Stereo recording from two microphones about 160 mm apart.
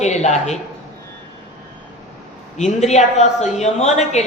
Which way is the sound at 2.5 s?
45° left (ahead or behind).